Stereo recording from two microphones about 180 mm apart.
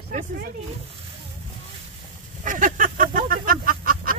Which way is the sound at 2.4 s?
45° right (ahead or behind).